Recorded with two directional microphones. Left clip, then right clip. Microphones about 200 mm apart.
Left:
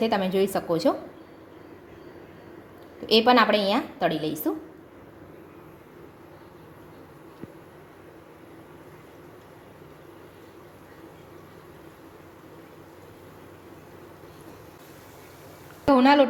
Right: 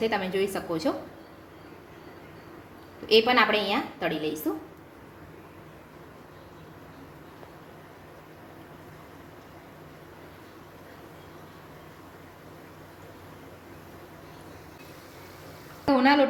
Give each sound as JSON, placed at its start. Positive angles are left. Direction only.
{"t": 0.0, "sound": "a woman's voice", "side_deg": 35}
{"t": 3.1, "sound": "a woman's voice", "side_deg": 40}
{"t": 15.9, "sound": "a woman's voice", "side_deg": 35}